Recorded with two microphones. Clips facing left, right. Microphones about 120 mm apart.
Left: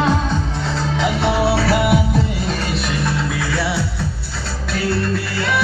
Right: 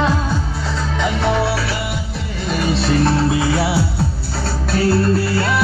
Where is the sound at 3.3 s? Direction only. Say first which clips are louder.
Right 4 dB; 25° right (ahead or behind).